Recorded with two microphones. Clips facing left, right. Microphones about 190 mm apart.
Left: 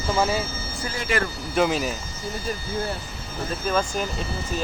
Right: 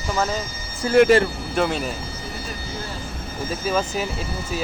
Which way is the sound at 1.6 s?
Centre (ahead or behind).